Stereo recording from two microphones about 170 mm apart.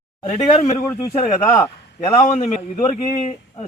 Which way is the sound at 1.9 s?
40° left (ahead or behind).